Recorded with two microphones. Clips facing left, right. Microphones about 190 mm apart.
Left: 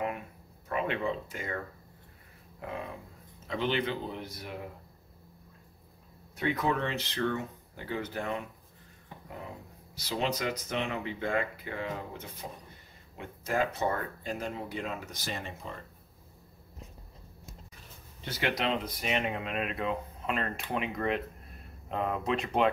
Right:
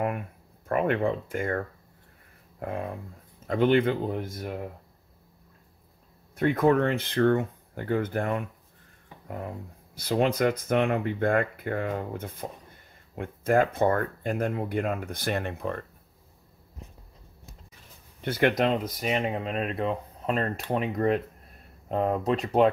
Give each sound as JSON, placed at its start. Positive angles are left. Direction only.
{"t": 0.7, "sound": "speech", "side_deg": -50}
{"t": 2.6, "sound": "speech", "side_deg": -50}
{"t": 6.3, "sound": "speech", "side_deg": -50}
{"t": 9.9, "sound": "speech", "side_deg": -55}
{"t": 18.2, "sound": "speech", "side_deg": -55}